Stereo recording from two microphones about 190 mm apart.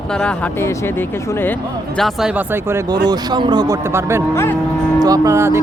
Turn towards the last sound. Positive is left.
turn(degrees=-15)  # may be behind; listen again after turning